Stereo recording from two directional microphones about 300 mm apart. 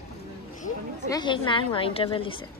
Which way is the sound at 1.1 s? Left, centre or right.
Centre.